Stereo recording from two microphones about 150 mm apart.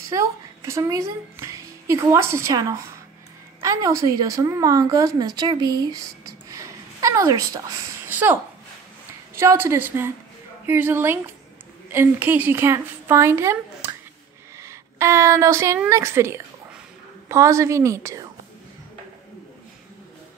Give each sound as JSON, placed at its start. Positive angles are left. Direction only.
{"t": 0.1, "sound": "a woman's voice", "side_deg": -20}
{"t": 8.1, "sound": "a sound", "side_deg": -10}
{"t": 9.3, "sound": "a woman's voice", "side_deg": -15}